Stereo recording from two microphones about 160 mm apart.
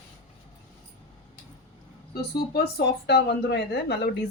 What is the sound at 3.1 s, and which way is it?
Speech, 90° left.